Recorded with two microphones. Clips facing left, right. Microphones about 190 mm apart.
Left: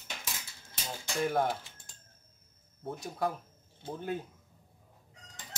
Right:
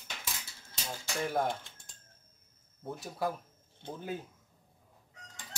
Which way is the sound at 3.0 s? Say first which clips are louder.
Left 1 dB; 5° right (ahead or behind).